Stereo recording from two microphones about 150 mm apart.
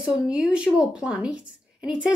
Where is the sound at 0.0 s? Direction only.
5° right (ahead or behind).